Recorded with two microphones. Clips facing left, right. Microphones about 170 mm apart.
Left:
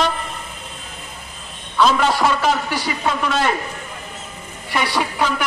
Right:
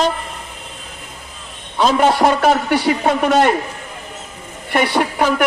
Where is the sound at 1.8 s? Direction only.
45° right (ahead or behind).